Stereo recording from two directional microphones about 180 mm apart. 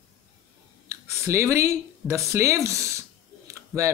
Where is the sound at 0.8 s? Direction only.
15° right (ahead or behind).